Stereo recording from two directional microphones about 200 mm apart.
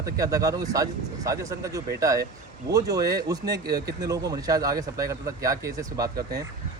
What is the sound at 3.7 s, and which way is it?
Speech, 50° right (ahead or behind).